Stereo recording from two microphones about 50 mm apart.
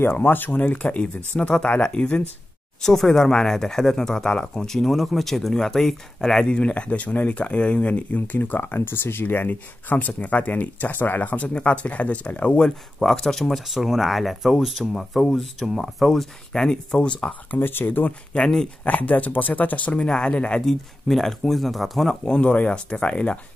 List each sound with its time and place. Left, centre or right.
0.1 s speech: left
2.8 s speech: centre
6.6 s speech: left
12.6 s speech: centre
13.7 s speech: centre
17.6 s speech: left
18.3 s speech: centre
18.9 s speech: left
20.1 s speech: centre
20.6 s speech: centre
22.2 s speech: left